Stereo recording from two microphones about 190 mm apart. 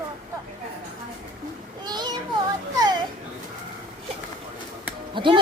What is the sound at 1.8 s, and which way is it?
Child singing, 20° right (ahead or behind).